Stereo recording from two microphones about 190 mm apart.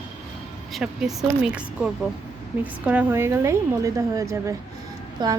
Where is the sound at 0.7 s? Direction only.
Centre (ahead or behind).